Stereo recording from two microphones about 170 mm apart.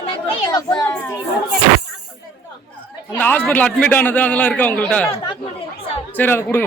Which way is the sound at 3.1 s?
10° left (ahead or behind).